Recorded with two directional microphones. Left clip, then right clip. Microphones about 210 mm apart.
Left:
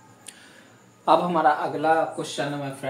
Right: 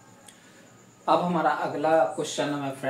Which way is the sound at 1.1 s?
55° left (ahead or behind).